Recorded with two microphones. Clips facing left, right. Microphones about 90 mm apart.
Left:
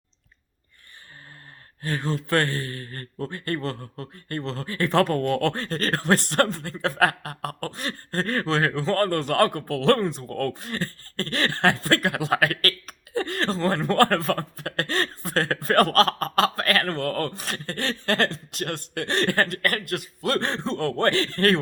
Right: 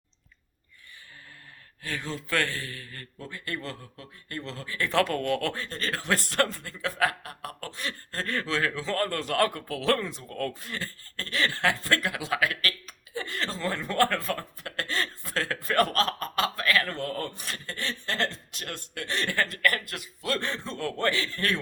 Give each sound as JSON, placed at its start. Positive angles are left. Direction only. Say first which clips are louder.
{"t": 1.8, "sound": "speech", "louder": "left 7 dB", "side_deg": 50}
{"t": 10.2, "sound": "speech", "louder": "left 5 dB", "side_deg": 45}
{"t": 18.7, "sound": "speech", "louder": "left 6 dB", "side_deg": 70}